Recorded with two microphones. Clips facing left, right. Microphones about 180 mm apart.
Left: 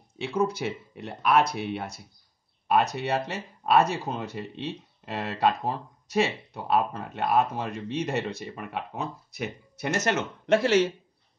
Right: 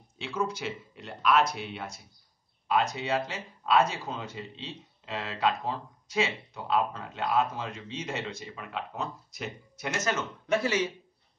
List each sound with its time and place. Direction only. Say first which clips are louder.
0.2 s speech: left 5 dB; 60° left (ahead or behind); by 10.9 s 75° left (ahead or behind)